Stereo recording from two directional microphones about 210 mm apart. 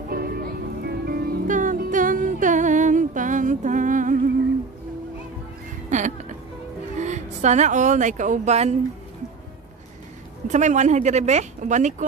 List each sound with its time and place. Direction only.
0.1 s music: 45° right (ahead or behind)
5.9 s music: 35° right (ahead or behind)
7.0 s speech: 35° right (ahead or behind)
10.5 s speech: 35° right (ahead or behind)